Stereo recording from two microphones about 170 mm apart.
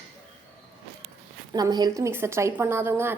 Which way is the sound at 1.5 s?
25° right (ahead or behind).